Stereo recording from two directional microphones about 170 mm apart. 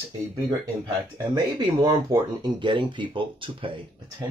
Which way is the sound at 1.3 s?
25° right (ahead or behind).